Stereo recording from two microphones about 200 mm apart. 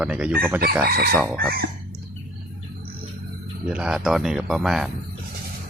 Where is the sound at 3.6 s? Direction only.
5° right (ahead or behind).